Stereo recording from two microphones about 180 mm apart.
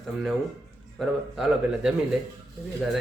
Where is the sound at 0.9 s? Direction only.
Centre (ahead or behind).